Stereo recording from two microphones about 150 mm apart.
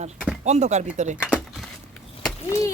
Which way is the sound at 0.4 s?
50° right (ahead or behind).